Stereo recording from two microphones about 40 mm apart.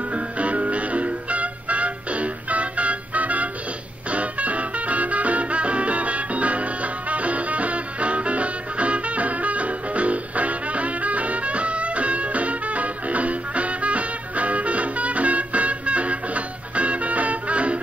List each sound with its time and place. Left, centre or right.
0.1 s music: right